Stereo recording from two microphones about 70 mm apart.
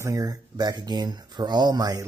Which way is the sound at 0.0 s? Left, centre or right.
Right.